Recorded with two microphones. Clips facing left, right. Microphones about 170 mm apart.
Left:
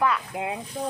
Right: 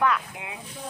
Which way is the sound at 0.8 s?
40° left (ahead or behind).